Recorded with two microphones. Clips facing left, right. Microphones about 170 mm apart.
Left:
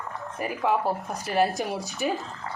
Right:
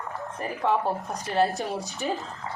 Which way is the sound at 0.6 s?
Centre (ahead or behind).